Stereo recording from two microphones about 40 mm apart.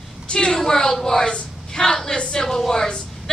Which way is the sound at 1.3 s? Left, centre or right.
Centre.